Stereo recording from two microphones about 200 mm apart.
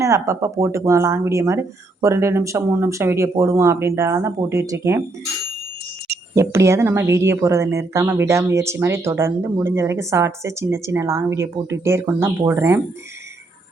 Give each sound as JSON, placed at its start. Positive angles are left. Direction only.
{"t": 0.0, "sound": "a woman's voice", "side_deg": -15}
{"t": 6.3, "sound": "a woman's voice", "side_deg": -15}